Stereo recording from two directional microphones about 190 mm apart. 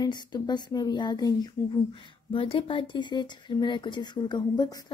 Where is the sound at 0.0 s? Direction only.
20° left (ahead or behind).